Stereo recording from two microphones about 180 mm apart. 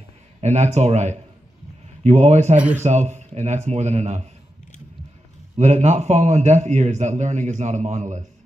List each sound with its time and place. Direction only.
0.4 s a man's voice: 40° right (ahead or behind)
5.6 s a man's voice: 40° right (ahead or behind)